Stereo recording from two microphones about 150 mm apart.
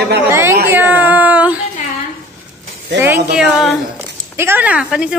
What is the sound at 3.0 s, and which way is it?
A woman's voice, 15° right (ahead or behind).